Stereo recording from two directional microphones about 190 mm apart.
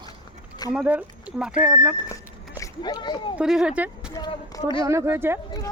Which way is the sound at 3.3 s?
Centre (ahead or behind).